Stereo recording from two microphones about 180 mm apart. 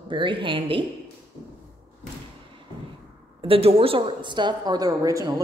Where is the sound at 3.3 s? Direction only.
30° right (ahead or behind).